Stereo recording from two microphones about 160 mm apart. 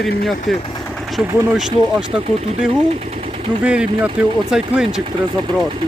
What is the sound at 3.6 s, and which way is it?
Speech, 10° right (ahead or behind).